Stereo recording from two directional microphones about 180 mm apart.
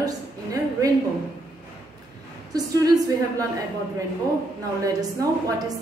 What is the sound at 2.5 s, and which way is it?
Speech, 20° right (ahead or behind).